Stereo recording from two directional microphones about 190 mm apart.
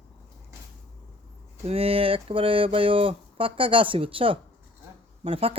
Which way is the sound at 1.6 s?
30° right (ahead or behind).